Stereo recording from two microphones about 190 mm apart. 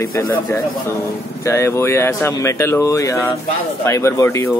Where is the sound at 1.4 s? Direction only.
15° left (ahead or behind).